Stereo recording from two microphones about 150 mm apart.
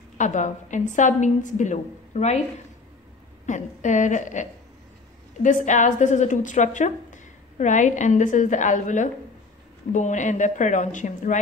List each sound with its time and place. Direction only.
0.2 s a woman's voice: 55° left (ahead or behind)
3.4 s a woman's voice: 55° left (ahead or behind)